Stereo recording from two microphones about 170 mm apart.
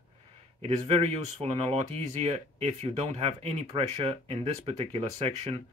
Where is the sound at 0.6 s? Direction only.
35° right (ahead or behind).